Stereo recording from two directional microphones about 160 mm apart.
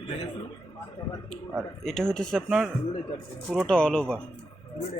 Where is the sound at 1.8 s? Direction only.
5° left (ahead or behind).